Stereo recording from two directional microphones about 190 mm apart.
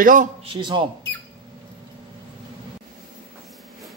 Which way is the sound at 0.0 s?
45° right (ahead or behind).